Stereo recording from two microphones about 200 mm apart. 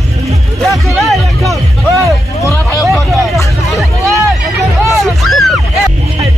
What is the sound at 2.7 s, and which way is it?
Music, centre (ahead or behind).